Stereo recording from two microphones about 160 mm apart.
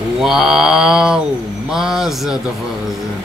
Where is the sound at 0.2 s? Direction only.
Centre (ahead or behind).